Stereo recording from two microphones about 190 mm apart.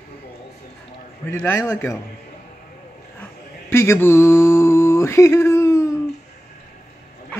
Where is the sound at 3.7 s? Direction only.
15° left (ahead or behind).